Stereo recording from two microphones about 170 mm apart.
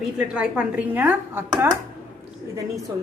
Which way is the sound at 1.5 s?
25° right (ahead or behind).